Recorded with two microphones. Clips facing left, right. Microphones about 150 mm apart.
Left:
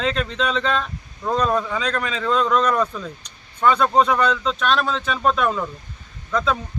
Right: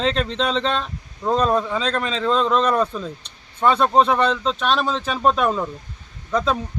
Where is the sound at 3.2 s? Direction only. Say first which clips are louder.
Left 1 dB; 30° right (ahead or behind).